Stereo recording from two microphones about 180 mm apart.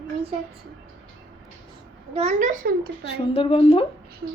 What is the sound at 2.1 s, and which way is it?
Speech, 40° right (ahead or behind).